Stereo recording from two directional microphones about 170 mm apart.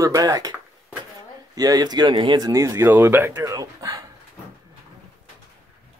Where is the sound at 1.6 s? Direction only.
20° right (ahead or behind).